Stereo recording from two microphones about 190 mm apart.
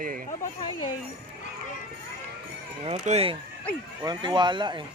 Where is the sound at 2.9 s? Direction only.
35° right (ahead or behind).